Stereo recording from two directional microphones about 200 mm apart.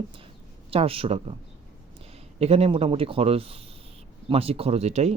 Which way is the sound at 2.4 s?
30° right (ahead or behind).